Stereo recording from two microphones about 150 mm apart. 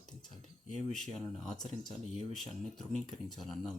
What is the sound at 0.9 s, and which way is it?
Speech, centre (ahead or behind).